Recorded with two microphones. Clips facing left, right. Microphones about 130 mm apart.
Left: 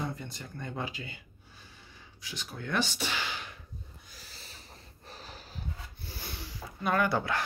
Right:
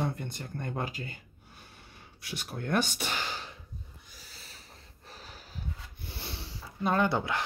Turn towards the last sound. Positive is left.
turn(degrees=-20)  # may be behind; listen again after turning